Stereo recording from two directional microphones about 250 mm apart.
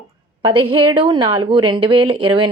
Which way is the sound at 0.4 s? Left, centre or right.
Centre.